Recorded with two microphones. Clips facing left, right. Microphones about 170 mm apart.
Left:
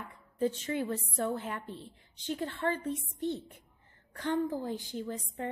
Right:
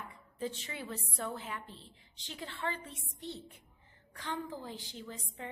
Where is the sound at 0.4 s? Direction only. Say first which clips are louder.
Left 9 dB; 50° left (ahead or behind).